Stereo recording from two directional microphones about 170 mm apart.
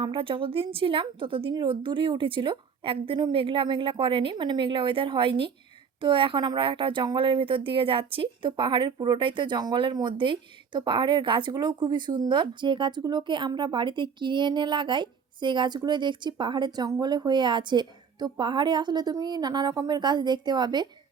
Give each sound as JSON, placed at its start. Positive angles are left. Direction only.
{"t": 0.0, "sound": "a woman's voice", "side_deg": -30}